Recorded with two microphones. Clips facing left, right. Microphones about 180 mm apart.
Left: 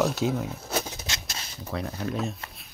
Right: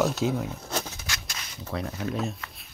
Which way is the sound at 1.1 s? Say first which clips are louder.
Left 1 dB; 20° left (ahead or behind).